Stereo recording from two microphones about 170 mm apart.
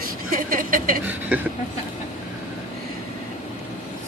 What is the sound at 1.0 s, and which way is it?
Speech, 10° right (ahead or behind).